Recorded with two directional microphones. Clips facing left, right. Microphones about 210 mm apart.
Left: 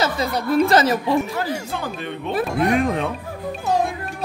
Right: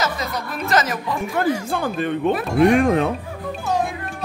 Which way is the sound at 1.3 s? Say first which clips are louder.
Right 4 dB; 50° right (ahead or behind).